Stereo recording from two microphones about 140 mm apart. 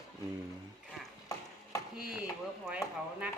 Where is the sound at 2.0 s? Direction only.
5° right (ahead or behind).